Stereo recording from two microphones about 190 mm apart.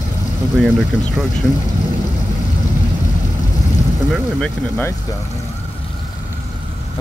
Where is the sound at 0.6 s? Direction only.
Centre (ahead or behind).